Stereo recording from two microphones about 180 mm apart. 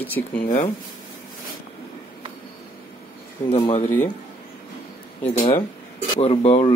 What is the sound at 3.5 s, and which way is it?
Speech, 30° left (ahead or behind).